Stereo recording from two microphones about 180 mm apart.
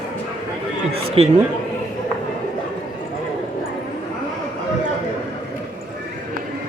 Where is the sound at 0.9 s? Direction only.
35° right (ahead or behind).